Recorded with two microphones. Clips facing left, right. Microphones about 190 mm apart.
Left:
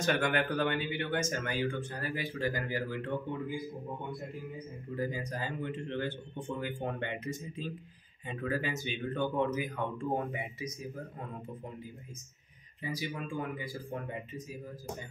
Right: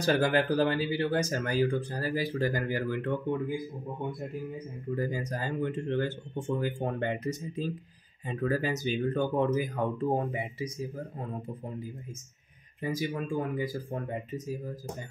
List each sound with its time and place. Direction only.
0.0 s speech: 35° right (ahead or behind); by 3.1 s 50° right (ahead or behind)
4.9 s speech: 45° right (ahead or behind)
12.8 s speech: 45° right (ahead or behind)